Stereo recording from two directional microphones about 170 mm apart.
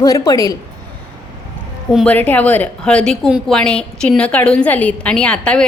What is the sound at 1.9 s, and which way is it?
A woman's voice, 5° left (ahead or behind).